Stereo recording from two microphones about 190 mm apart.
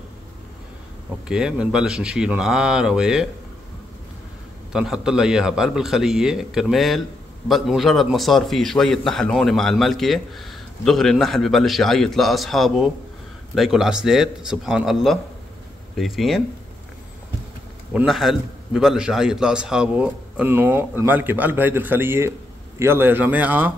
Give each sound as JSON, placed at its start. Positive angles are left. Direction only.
{"t": 1.3, "sound": "a man's voice", "side_deg": -5}
{"t": 4.7, "sound": "a man's voice", "side_deg": -5}
{"t": 17.9, "sound": "a man's voice", "side_deg": -5}